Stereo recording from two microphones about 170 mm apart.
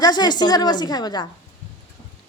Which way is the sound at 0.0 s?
25° left (ahead or behind).